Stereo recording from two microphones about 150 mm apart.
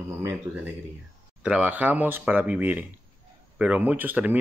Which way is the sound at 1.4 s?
5° right (ahead or behind).